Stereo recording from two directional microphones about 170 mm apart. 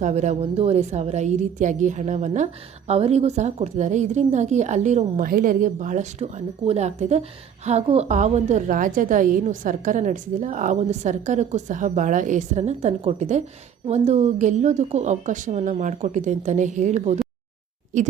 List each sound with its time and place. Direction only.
0.0 s a woman's voice: 40° right (ahead or behind)